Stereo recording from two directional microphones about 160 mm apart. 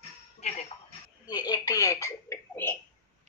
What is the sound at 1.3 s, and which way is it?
Speech, 25° left (ahead or behind).